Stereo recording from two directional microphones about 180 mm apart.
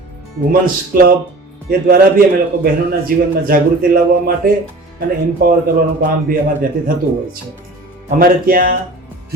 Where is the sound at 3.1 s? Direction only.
50° right (ahead or behind).